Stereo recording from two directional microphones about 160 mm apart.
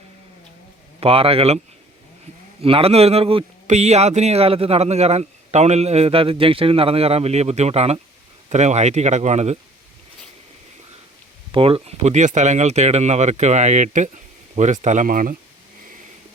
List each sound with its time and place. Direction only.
0.9 s speech: 35° right (ahead or behind)
2.6 s speech: 35° right (ahead or behind)
11.5 s speech: 35° right (ahead or behind); by 15.4 s 55° right (ahead or behind)